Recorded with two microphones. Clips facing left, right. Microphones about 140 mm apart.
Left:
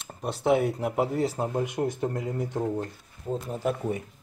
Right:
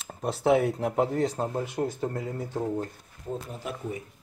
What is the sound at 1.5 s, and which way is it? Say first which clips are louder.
Speech: left 2 dB; 15° left (ahead or behind).